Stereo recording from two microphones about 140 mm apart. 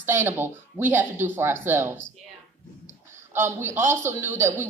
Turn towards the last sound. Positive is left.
turn(degrees=-15)  # may be behind; listen again after turning